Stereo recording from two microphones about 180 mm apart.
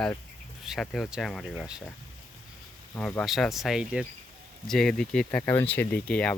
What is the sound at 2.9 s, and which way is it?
Speech, 10° left (ahead or behind).